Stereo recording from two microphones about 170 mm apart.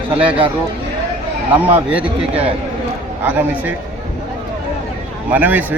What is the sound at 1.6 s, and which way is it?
Speech, 10° right (ahead or behind).